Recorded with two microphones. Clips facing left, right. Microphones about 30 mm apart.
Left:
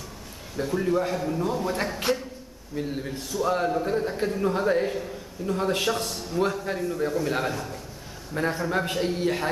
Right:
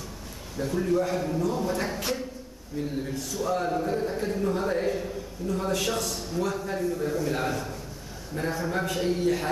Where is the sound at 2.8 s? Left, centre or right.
Centre.